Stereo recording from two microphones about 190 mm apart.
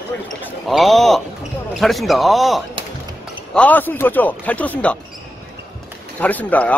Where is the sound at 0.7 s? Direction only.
Centre (ahead or behind).